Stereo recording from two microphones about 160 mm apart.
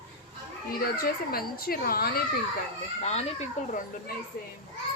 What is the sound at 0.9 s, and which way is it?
Speech, 70° left (ahead or behind).